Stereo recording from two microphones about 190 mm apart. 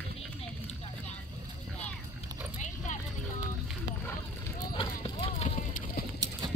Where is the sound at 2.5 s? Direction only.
40° left (ahead or behind).